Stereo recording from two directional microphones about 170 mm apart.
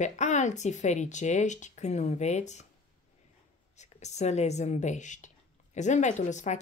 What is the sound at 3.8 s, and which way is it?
Speech, 40° left (ahead or behind).